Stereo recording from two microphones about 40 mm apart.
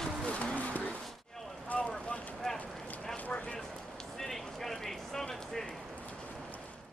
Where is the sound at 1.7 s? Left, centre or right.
Left.